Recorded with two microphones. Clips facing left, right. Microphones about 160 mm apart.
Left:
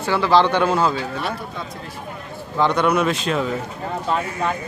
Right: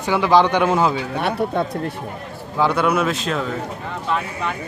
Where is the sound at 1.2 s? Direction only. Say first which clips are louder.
Right 7 dB; 60° right (ahead or behind).